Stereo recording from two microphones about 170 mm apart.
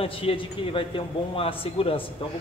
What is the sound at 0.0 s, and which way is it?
A man's voice, 35° left (ahead or behind).